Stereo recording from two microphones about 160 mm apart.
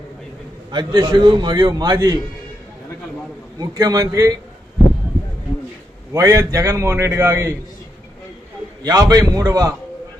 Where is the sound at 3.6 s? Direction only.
25° right (ahead or behind).